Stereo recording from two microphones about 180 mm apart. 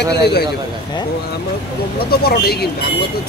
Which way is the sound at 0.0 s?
65° left (ahead or behind).